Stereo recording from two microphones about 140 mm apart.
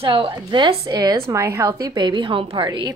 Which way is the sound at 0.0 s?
40° right (ahead or behind).